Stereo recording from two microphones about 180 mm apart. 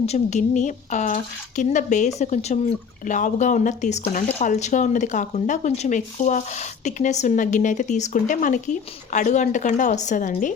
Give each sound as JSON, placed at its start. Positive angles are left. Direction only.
{"t": 0.0, "sound": "speech", "side_deg": 40}